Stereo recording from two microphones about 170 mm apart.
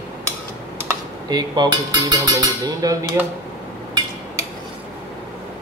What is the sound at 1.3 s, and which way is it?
Speech, 25° right (ahead or behind).